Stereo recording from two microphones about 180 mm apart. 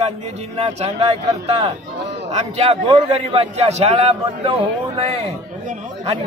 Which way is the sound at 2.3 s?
35° right (ahead or behind).